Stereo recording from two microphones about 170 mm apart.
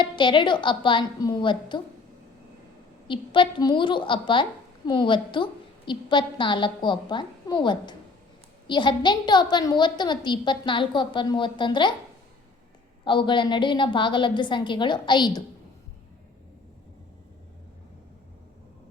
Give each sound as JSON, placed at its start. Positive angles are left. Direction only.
{"t": 0.0, "sound": "a woman's voice", "side_deg": 30}
{"t": 3.1, "sound": "a woman's voice", "side_deg": 30}
{"t": 13.1, "sound": "a woman's voice", "side_deg": 30}